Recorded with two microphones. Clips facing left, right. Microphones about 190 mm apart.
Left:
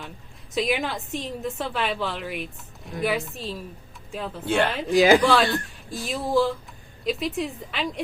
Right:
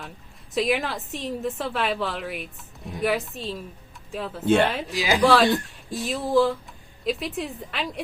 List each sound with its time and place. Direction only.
0.5 s a woman's voice: centre (ahead or behind)
4.4 s speech: 20° right (ahead or behind)
4.7 s a woman's voice: centre (ahead or behind)
4.9 s speech: 55° left (ahead or behind)
5.2 s a woman's voice: centre (ahead or behind)